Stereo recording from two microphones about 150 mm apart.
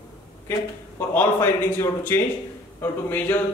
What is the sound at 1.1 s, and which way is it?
A man's voice, 15° left (ahead or behind).